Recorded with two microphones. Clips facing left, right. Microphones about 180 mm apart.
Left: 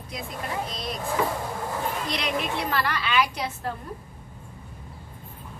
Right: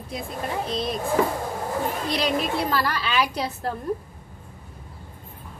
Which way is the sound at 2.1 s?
35° right (ahead or behind).